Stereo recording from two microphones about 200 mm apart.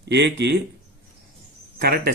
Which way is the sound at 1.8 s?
50° right (ahead or behind).